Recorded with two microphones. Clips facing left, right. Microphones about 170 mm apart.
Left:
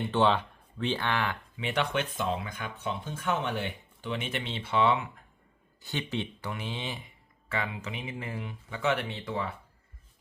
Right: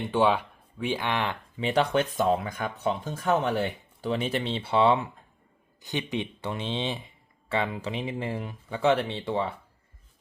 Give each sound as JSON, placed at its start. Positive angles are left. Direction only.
{"t": 0.1, "sound": "speech", "side_deg": -10}
{"t": 1.5, "sound": "speech", "side_deg": -35}
{"t": 5.8, "sound": "speech", "side_deg": -15}